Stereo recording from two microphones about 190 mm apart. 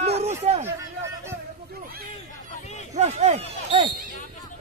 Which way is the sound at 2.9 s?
35° right (ahead or behind).